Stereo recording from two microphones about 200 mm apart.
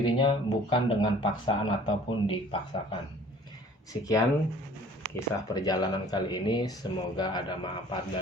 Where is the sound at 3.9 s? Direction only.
20° left (ahead or behind).